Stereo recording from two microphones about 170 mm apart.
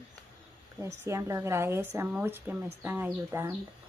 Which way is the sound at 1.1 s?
20° right (ahead or behind).